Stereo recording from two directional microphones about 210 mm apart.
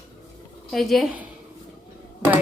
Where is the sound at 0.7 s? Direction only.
Centre (ahead or behind).